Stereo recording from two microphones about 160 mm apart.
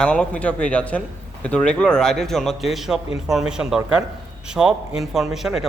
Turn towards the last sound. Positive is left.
turn(degrees=0)  # may be behind; listen again after turning